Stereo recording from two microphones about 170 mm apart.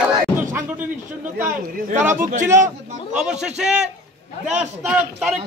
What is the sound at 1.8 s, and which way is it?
Speech, 50° right (ahead or behind).